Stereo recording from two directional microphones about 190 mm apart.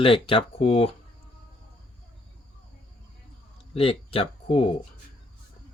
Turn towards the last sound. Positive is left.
turn(degrees=30)  # may be behind; listen again after turning